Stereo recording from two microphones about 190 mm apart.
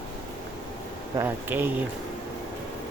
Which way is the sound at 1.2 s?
10° right (ahead or behind).